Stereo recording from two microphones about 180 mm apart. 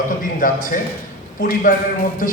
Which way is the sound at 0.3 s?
50° left (ahead or behind).